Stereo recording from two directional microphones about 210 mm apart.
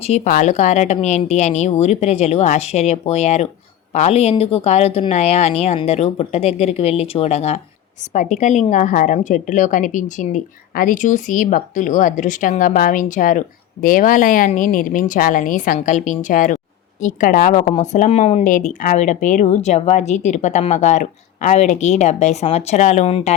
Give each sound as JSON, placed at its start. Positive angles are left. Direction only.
{"t": 0.0, "sound": "speech", "side_deg": 35}